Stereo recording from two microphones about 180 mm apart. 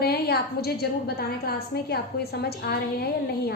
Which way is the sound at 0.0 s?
60° left (ahead or behind).